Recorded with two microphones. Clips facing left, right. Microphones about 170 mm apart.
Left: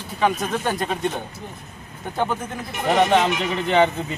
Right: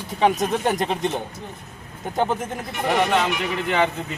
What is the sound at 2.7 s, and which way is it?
Speech, 20° left (ahead or behind).